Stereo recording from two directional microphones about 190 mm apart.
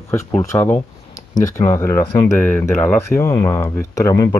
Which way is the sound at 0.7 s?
40° left (ahead or behind).